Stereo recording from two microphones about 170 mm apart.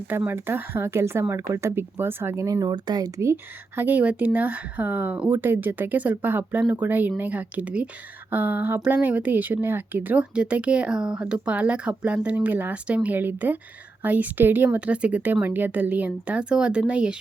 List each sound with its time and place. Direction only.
0.1 s speech: 10° right (ahead or behind)